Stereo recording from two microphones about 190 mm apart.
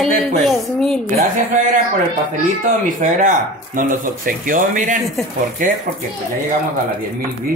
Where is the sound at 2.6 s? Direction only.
45° right (ahead or behind).